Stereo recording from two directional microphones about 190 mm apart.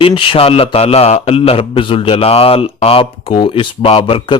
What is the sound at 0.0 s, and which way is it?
A man's voice, 30° left (ahead or behind).